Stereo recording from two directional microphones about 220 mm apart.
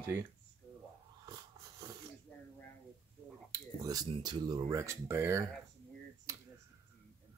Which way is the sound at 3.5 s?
15° right (ahead or behind).